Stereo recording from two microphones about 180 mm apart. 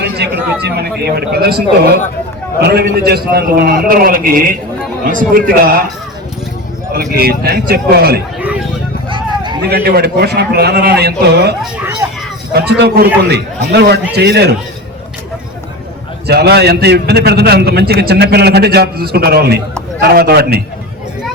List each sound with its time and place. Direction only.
0.2 s a man's voice: 65° right (ahead or behind)
6.9 s a man's voice: 60° right (ahead or behind)
9.0 s a sound: 25° right (ahead or behind)
9.6 s a man's voice: 60° right (ahead or behind)
11.6 s speech: 10° right (ahead or behind)
12.5 s a man's voice: 65° right (ahead or behind)
16.2 s a man's voice: 65° right (ahead or behind)